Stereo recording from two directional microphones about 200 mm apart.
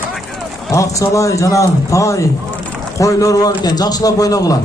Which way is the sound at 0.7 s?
15° left (ahead or behind).